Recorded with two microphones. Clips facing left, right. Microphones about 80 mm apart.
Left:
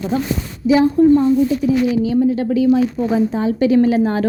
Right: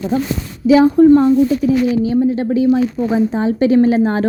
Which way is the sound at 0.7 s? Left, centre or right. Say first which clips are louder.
Right 3 dB; right.